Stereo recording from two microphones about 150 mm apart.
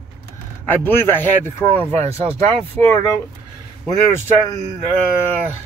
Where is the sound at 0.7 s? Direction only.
15° left (ahead or behind).